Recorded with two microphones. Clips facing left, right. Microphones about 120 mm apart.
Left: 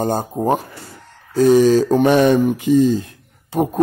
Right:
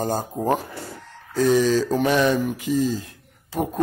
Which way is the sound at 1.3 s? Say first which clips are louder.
Left 6 dB; 50° left (ahead or behind).